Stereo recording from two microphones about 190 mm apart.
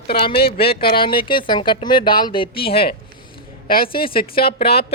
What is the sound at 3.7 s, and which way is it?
Speech, 50° left (ahead or behind).